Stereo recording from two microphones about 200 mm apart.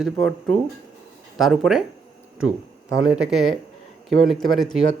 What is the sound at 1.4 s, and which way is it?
Speech, centre (ahead or behind).